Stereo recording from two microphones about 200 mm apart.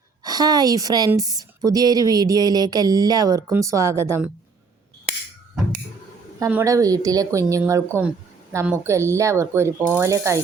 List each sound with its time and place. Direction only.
0.3 s a woman's voice: 20° right (ahead or behind)
6.4 s a woman's voice: 15° right (ahead or behind)